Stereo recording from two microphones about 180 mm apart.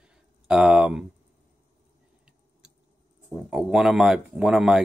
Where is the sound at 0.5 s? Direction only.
5° right (ahead or behind).